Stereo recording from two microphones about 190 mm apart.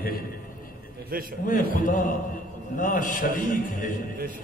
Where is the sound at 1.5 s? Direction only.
45° left (ahead or behind).